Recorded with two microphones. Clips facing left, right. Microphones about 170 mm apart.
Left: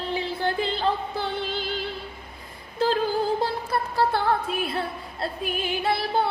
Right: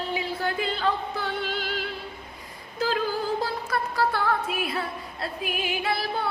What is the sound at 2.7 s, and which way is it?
Female singing, 30° left (ahead or behind).